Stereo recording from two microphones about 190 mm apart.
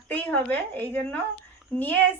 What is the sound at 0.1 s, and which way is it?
A woman's voice, 10° left (ahead or behind).